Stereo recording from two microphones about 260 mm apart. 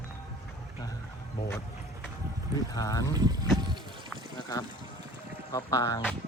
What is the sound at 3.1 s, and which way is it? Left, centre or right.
Speech, centre.